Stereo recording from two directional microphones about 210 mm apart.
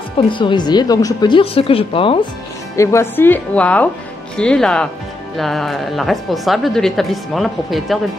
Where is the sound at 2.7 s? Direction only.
15° left (ahead or behind).